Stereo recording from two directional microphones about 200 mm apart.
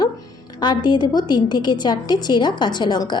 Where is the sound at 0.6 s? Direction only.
20° left (ahead or behind).